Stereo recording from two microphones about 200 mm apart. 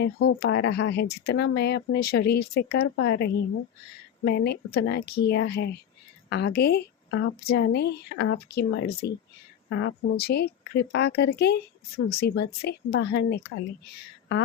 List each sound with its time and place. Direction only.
0.0 s speech: 55° left (ahead or behind)
2.8 s a woman's voice: 65° left (ahead or behind)
7.4 s speech: 55° left (ahead or behind)
9.6 s speech: 70° left (ahead or behind)